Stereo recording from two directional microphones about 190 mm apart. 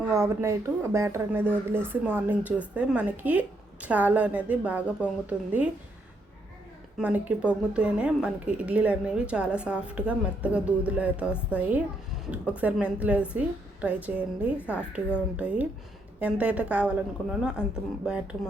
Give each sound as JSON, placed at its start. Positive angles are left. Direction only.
{"t": 0.1, "sound": "a woman's voice", "side_deg": -15}
{"t": 7.0, "sound": "a woman's voice", "side_deg": -5}